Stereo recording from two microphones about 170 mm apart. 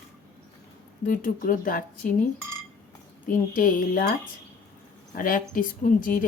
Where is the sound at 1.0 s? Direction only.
50° left (ahead or behind).